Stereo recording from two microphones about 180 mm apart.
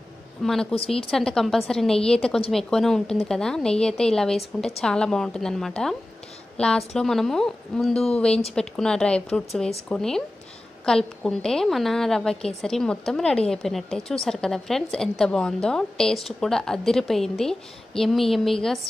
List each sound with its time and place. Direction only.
0.4 s a woman's voice: centre (ahead or behind)
0.7 s speech: 30° left (ahead or behind)
1.1 s a woman's voice: 5° left (ahead or behind)